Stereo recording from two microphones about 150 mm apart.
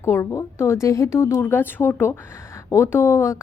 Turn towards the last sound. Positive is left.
turn(degrees=20)  # may be behind; listen again after turning